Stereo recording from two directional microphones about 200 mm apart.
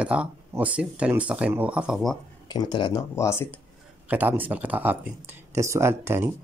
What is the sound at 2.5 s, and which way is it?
Speech, 20° left (ahead or behind).